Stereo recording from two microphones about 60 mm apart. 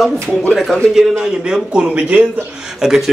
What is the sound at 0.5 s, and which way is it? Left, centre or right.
Speech, centre.